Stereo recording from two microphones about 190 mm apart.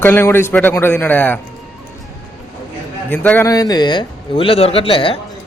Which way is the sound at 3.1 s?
10° left (ahead or behind).